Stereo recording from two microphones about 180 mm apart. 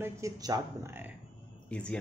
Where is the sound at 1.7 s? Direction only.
5° left (ahead or behind).